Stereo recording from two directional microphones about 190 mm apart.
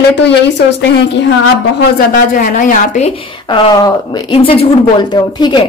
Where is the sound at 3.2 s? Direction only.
25° left (ahead or behind).